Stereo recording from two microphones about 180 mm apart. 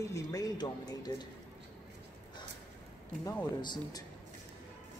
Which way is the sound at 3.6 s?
25° left (ahead or behind).